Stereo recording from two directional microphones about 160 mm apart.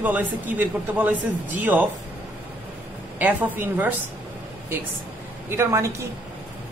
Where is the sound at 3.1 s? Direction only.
10° right (ahead or behind).